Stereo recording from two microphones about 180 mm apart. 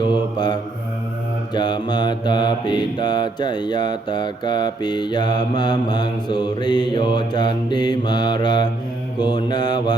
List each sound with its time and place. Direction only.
0.0 s mantra: 25° left (ahead or behind)